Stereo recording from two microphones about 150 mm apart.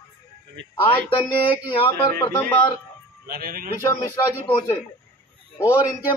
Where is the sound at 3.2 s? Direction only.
85° right.